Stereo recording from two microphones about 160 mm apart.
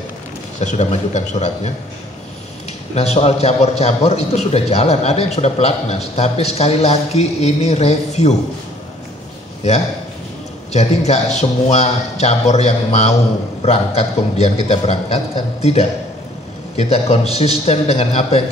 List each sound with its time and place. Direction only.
0.6 s a man's voice: 45° left (ahead or behind)
2.9 s a man's voice: 40° left (ahead or behind)
10.7 s a man's voice: 45° left (ahead or behind)